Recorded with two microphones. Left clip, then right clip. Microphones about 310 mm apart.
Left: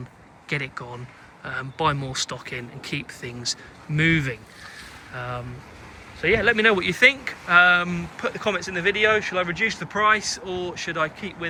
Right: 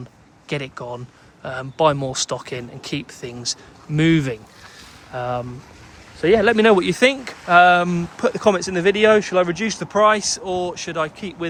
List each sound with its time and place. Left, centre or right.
0.4 s speech: centre